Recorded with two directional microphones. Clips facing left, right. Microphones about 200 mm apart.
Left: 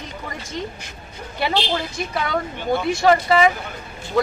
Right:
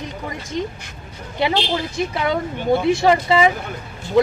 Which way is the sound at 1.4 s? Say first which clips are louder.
Right 2 dB; 20° right (ahead or behind).